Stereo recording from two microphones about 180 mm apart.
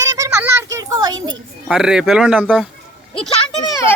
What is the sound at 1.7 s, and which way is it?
Speech, 5° right (ahead or behind).